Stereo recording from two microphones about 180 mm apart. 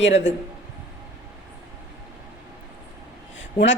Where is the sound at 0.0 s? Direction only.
90° left.